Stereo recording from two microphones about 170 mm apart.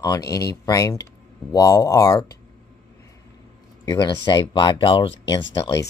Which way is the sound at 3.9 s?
25° left (ahead or behind).